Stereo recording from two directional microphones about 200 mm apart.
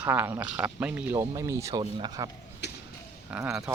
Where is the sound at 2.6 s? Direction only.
60° left (ahead or behind).